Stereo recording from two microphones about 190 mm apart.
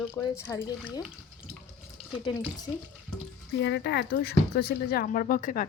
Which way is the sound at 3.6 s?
65° left (ahead or behind).